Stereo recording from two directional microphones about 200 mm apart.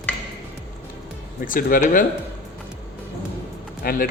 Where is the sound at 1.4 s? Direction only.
45° left (ahead or behind).